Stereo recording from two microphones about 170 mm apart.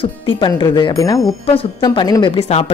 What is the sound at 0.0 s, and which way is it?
Speech, 30° left (ahead or behind).